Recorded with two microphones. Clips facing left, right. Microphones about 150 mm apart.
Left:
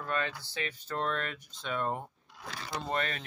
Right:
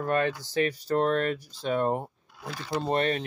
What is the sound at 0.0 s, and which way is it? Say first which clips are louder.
Speech: right 8 dB; 45° right (ahead or behind).